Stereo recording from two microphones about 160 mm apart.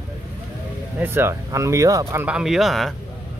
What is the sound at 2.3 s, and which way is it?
Speech, 5° right (ahead or behind).